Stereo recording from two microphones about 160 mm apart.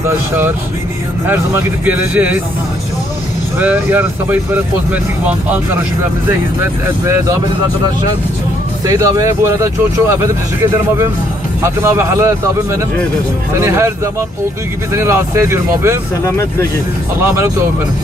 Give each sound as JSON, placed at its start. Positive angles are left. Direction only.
{"t": 1.2, "sound": "speech", "side_deg": -15}
{"t": 3.5, "sound": "speech", "side_deg": -10}
{"t": 8.8, "sound": "speech", "side_deg": -25}
{"t": 11.6, "sound": "speech", "side_deg": -15}
{"t": 13.6, "sound": "speech", "side_deg": -15}
{"t": 15.0, "sound": "speech", "side_deg": -15}
{"t": 16.3, "sound": "speech", "side_deg": 15}
{"t": 17.2, "sound": "speech", "side_deg": -15}